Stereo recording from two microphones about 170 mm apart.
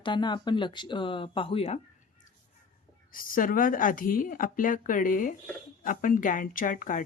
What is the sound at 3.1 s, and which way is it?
Speech, 55° left (ahead or behind).